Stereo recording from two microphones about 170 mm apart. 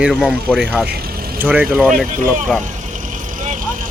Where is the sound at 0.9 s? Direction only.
60° right (ahead or behind).